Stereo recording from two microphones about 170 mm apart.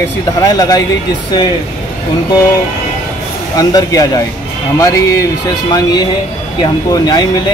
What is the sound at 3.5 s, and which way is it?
Speech, 20° left (ahead or behind).